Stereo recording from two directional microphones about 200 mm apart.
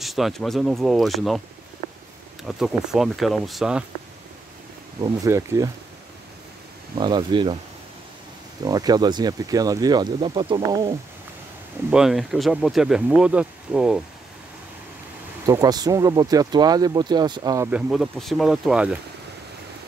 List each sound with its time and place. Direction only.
0.0 s speech: centre (ahead or behind)
2.4 s speech: centre (ahead or behind)
5.0 s speech: 15° right (ahead or behind)
7.0 s speech: 20° right (ahead or behind)
8.6 s speech: 20° right (ahead or behind)
11.9 s speech: centre (ahead or behind)
15.4 s speech: 20° right (ahead or behind)
17.6 s speech: 5° right (ahead or behind)